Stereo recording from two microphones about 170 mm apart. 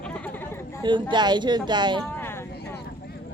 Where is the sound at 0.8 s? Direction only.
30° right (ahead or behind).